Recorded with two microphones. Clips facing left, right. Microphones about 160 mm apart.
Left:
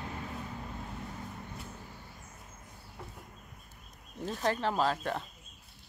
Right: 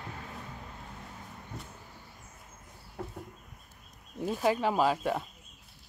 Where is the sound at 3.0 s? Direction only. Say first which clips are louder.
Right 8 dB; 50° right (ahead or behind).